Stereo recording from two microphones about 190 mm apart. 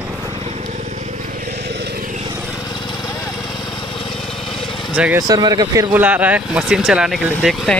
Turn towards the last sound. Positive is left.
turn(degrees=0)  # may be behind; listen again after turning